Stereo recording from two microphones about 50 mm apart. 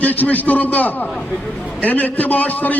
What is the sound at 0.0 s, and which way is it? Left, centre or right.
A man's voice, left.